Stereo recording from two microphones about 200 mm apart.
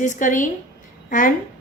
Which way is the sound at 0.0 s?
40° left (ahead or behind).